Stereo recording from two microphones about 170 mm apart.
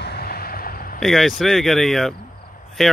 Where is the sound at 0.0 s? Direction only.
70° left (ahead or behind).